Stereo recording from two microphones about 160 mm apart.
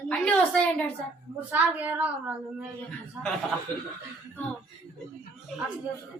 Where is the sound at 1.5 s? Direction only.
10° right (ahead or behind).